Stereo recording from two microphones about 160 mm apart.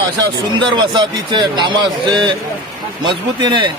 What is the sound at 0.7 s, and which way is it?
A man's voice, 30° right (ahead or behind).